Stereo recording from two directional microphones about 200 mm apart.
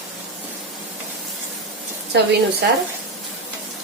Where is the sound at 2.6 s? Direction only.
55° right (ahead or behind).